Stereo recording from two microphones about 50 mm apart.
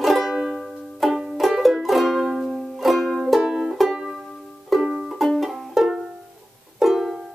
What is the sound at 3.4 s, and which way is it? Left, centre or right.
Music, centre.